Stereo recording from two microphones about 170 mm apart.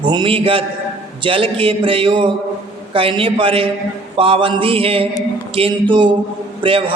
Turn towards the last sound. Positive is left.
turn(degrees=-30)  # may be behind; listen again after turning